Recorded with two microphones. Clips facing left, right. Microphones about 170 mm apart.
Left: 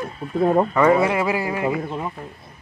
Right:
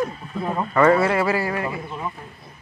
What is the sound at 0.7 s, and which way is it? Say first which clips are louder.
A man's voice: even; 15° left (ahead or behind).